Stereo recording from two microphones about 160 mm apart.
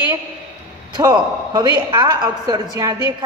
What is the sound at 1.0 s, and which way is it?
Speech, 25° right (ahead or behind).